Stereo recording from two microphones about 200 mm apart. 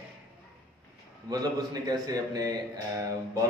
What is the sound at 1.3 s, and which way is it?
A man's voice, 20° right (ahead or behind).